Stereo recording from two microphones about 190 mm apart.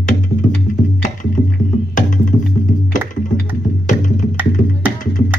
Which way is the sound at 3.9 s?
40° left (ahead or behind).